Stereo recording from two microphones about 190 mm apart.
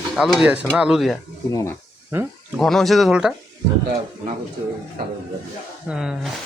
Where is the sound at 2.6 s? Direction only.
Centre (ahead or behind).